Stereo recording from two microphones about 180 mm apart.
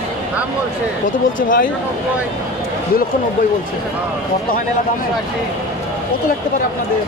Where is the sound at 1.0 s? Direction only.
50° left (ahead or behind).